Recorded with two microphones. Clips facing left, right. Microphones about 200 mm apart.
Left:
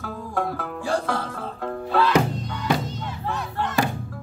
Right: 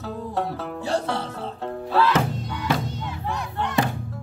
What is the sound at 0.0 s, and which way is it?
Music, 25° right (ahead or behind).